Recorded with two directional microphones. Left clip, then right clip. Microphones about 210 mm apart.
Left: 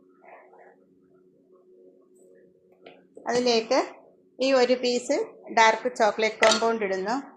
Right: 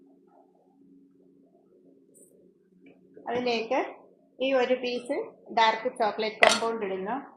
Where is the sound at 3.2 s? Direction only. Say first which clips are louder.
Left 5 dB; 45° left (ahead or behind).